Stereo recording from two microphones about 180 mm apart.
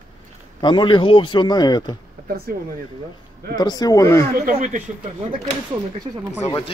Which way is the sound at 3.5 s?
20° left (ahead or behind).